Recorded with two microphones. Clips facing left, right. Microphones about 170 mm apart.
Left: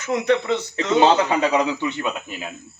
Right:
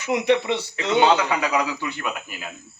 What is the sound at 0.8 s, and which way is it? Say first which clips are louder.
A man's voice: left 2 dB; 35° left (ahead or behind).